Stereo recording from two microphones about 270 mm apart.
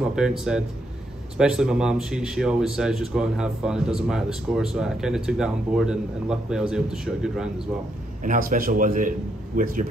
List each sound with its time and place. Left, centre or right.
0.1 s a man's voice: centre
8.2 s a man's voice: right